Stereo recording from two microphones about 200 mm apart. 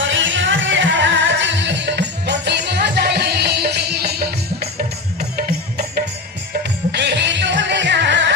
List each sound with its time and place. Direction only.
0.1 s music: 65° right (ahead or behind); by 4.3 s 50° right (ahead or behind)
5.4 s music: 50° right (ahead or behind)